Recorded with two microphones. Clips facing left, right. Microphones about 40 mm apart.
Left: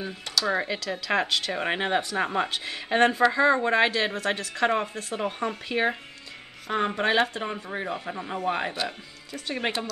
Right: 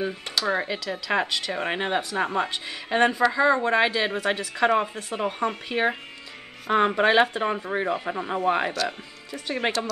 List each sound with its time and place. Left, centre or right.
0.0 s speech: right
0.5 s speech: centre
3.9 s a woman's voice: centre
7.0 s a woman's voice: right